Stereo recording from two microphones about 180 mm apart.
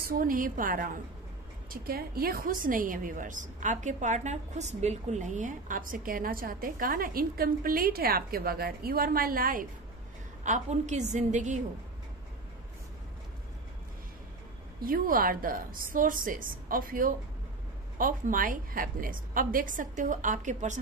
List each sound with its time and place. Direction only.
0.0 s a woman's voice: 50° right (ahead or behind)
14.8 s a woman's voice: 50° right (ahead or behind)